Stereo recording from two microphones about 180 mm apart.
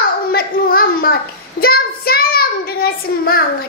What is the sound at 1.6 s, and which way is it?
Child singing, 55° left (ahead or behind).